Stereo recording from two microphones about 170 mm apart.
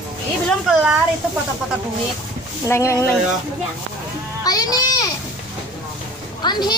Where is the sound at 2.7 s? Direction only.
15° left (ahead or behind).